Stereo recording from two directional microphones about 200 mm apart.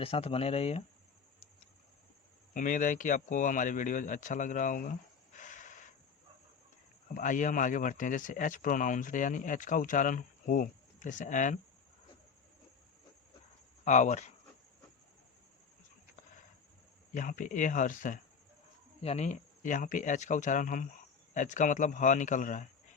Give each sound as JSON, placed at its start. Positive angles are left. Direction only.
{"t": 0.0, "sound": "speech", "side_deg": 30}
{"t": 2.5, "sound": "speech", "side_deg": 40}
{"t": 7.1, "sound": "speech", "side_deg": 40}
{"t": 13.8, "sound": "speech", "side_deg": 35}
{"t": 17.2, "sound": "speech", "side_deg": 40}